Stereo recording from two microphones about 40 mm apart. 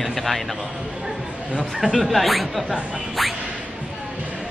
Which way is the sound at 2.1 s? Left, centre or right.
Centre.